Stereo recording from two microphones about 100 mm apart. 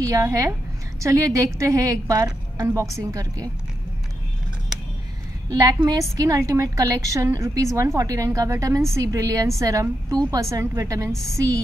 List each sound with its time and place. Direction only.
0.0 s a woman's voice: 30° right (ahead or behind)
5.5 s a woman's voice: 40° right (ahead or behind)